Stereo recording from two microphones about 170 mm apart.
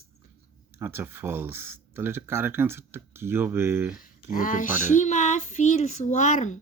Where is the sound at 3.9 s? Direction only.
55° left (ahead or behind).